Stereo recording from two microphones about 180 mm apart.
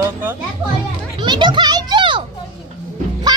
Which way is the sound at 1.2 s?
25° right (ahead or behind).